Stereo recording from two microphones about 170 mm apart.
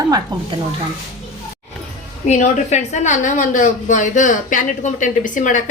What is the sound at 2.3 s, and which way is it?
A woman's voice, 45° left (ahead or behind).